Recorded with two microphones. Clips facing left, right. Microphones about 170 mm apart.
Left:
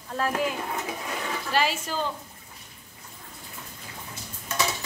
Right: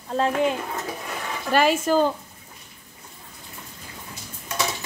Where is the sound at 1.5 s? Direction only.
50° right (ahead or behind).